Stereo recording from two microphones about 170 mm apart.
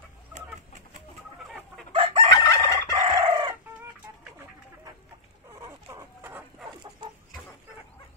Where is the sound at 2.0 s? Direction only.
35° right (ahead or behind).